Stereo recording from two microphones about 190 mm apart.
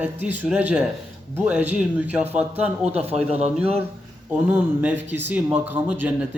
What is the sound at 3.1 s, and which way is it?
Speech, 35° right (ahead or behind).